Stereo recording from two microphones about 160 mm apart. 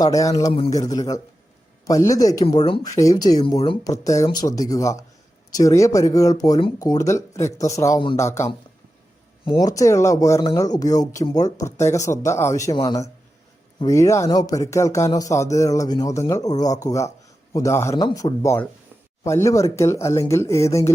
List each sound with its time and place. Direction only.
0.0 s speech: 20° left (ahead or behind)
9.6 s speech: 20° left (ahead or behind)